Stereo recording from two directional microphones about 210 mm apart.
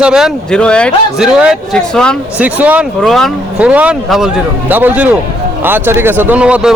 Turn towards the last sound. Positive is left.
turn(degrees=-5)  # may be behind; listen again after turning